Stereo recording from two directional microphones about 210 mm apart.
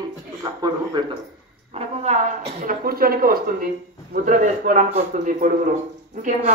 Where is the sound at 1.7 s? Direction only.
30° right (ahead or behind).